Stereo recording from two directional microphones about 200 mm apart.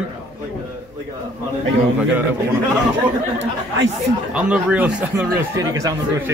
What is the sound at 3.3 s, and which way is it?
Speech, 65° right (ahead or behind).